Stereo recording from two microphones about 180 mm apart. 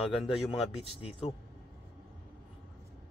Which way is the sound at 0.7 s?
35° left (ahead or behind).